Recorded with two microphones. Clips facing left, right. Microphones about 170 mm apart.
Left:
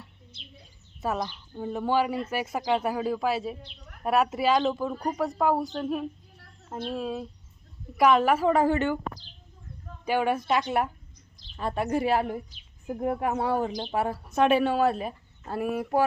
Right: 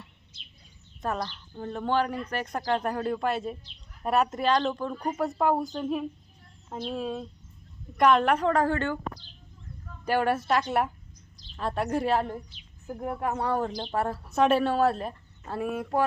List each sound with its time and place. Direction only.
1.0 s speech: 10° left (ahead or behind)
3.6 s a sound: 60° left (ahead or behind)
4.0 s speech: centre (ahead or behind)
10.4 s speech: 5° left (ahead or behind)
12.9 s speech: 20° left (ahead or behind)